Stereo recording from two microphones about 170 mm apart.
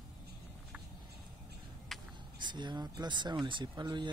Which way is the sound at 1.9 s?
Centre (ahead or behind).